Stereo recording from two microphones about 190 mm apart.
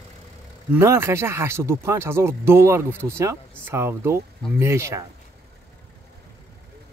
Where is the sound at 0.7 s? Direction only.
15° right (ahead or behind).